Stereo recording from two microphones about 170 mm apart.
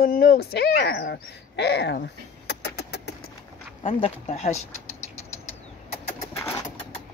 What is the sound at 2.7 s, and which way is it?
Vehicle, 85° left.